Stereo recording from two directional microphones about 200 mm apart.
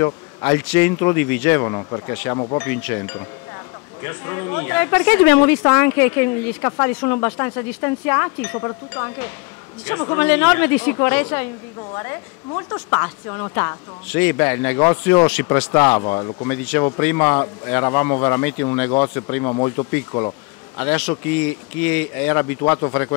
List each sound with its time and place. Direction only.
0.0 s speech: 15° left (ahead or behind)
2.6 s speech: 10° left (ahead or behind)
16.0 s speech: 25° left (ahead or behind)
20.1 s bee: 20° left (ahead or behind)
20.8 s speech: 10° left (ahead or behind)